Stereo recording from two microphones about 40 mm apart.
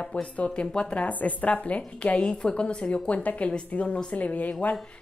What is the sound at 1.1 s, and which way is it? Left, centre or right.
A woman's voice, left.